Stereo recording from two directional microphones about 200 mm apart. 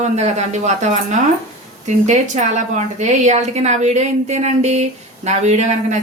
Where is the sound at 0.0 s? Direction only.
35° right (ahead or behind).